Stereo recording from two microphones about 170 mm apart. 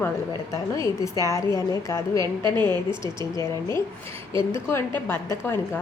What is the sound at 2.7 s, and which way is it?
A woman's voice, 15° left (ahead or behind).